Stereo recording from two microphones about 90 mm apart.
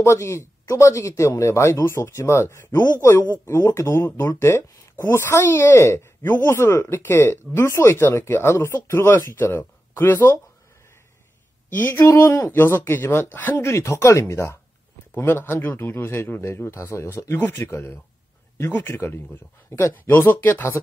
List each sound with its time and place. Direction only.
0.0 s speech: 30° left (ahead or behind)
11.7 s speech: 20° left (ahead or behind)
12.0 s speech: 35° left (ahead or behind)
13.6 s speech: 35° left (ahead or behind)